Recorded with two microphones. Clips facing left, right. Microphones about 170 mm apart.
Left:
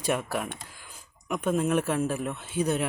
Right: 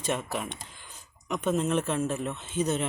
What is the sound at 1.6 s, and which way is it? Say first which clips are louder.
Speech: left 4 dB; 10° left (ahead or behind).